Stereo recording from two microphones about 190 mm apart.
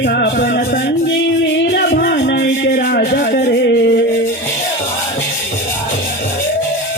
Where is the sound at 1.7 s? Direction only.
55° left (ahead or behind).